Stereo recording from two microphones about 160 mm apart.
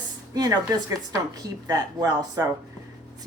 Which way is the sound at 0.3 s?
25° right (ahead or behind).